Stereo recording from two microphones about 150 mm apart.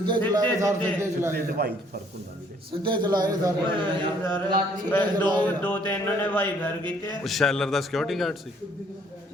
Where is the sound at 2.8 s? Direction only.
30° right (ahead or behind).